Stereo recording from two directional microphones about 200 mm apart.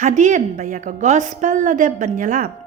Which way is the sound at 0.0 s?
40° right (ahead or behind).